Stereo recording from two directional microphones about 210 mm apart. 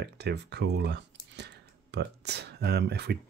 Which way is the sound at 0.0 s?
55° right (ahead or behind).